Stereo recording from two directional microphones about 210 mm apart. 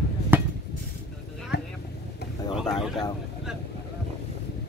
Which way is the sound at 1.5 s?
50° left (ahead or behind).